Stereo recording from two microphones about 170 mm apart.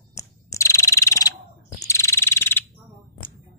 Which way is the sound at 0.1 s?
15° left (ahead or behind).